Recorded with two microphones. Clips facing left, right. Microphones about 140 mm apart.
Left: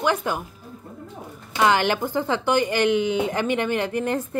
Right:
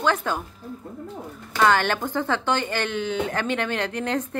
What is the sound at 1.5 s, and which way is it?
A woman's voice, 15° left (ahead or behind).